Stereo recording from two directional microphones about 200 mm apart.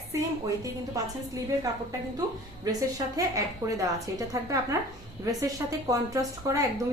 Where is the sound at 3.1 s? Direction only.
15° right (ahead or behind).